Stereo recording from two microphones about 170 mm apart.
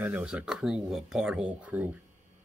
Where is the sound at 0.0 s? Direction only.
10° right (ahead or behind).